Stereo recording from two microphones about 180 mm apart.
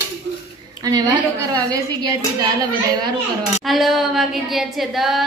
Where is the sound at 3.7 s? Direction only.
Centre (ahead or behind).